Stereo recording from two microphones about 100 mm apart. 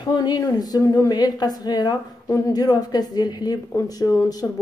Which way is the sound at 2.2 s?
35° left (ahead or behind).